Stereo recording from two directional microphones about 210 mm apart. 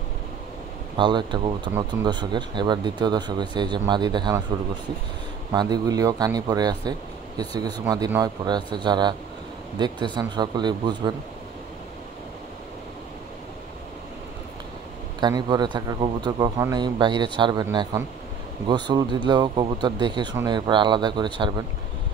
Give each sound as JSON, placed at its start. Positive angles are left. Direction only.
{"t": 0.9, "sound": "speech", "side_deg": -20}
{"t": 5.5, "sound": "speech", "side_deg": -20}
{"t": 15.1, "sound": "speech", "side_deg": -20}